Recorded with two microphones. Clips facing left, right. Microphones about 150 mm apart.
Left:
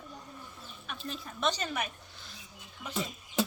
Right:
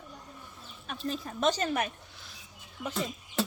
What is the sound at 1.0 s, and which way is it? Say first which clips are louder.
Speech: right 4 dB; 45° right (ahead or behind).